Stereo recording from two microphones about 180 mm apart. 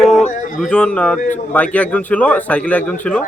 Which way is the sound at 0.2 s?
40° left (ahead or behind).